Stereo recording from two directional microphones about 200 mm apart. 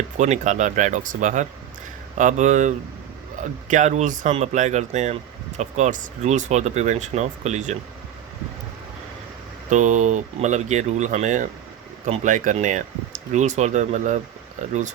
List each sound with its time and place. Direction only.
0.2 s speech: 35° right (ahead or behind)
9.6 s speech: 35° right (ahead or behind)